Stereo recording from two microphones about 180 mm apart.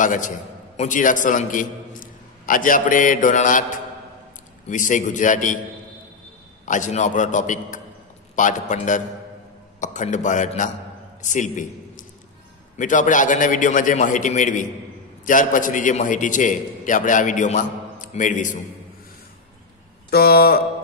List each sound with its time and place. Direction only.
0.0 s a man's voice: 45° left (ahead or behind)
4.6 s a man's voice: 45° left (ahead or behind)
6.6 s a man's voice: 45° left (ahead or behind)
20.1 s mantra: 60° left (ahead or behind)